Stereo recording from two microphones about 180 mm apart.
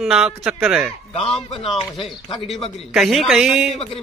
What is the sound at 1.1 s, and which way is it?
A man's voice, 30° left (ahead or behind).